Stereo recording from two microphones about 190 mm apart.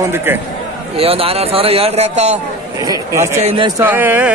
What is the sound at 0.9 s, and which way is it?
A man's voice, 30° right (ahead or behind).